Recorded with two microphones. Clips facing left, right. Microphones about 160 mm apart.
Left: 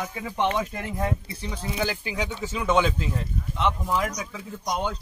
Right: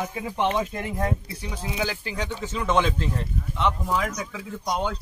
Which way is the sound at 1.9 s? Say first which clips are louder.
Left 1 dB; 15° left (ahead or behind).